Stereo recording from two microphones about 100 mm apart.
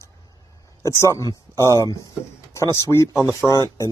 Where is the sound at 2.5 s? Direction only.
30° left (ahead or behind).